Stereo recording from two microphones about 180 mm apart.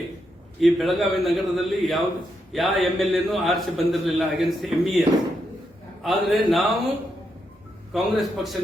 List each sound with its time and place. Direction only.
0.6 s a man's voice: centre (ahead or behind)
7.9 s a man's voice: centre (ahead or behind)